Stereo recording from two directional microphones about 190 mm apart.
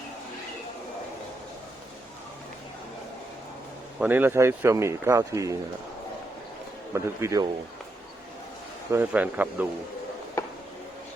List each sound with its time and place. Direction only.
4.0 s speech: 10° right (ahead or behind)
6.9 s speech: 15° right (ahead or behind)
8.9 s speech: 10° right (ahead or behind)